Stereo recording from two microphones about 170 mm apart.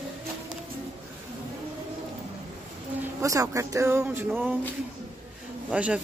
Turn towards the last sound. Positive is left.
turn(degrees=-5)  # may be behind; listen again after turning